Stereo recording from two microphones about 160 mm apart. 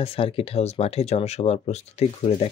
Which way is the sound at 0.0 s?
35° left (ahead or behind).